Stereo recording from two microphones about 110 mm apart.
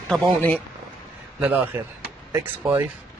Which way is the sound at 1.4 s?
15° right (ahead or behind).